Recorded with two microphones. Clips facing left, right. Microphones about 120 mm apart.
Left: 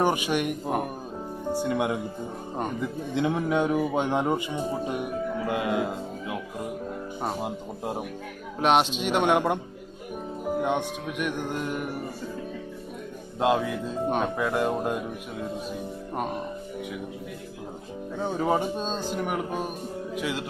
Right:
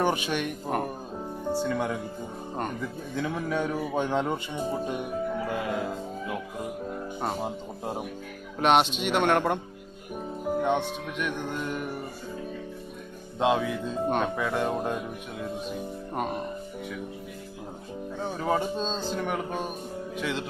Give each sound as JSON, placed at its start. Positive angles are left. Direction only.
{"t": 0.0, "sound": "speech", "side_deg": 10}
{"t": 3.2, "sound": "speech", "side_deg": 20}
{"t": 5.5, "sound": "music", "side_deg": 70}
{"t": 7.2, "sound": "speech", "side_deg": 5}
{"t": 10.6, "sound": "speech", "side_deg": 10}
{"t": 13.4, "sound": "speech", "side_deg": 0}
{"t": 18.4, "sound": "speech", "side_deg": 10}